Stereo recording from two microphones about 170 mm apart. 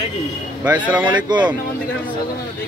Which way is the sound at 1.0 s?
25° right (ahead or behind).